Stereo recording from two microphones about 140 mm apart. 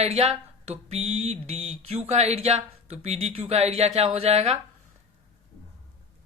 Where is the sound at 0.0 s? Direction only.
50° right (ahead or behind).